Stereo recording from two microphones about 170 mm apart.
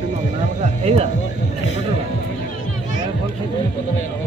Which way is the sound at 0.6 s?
40° right (ahead or behind).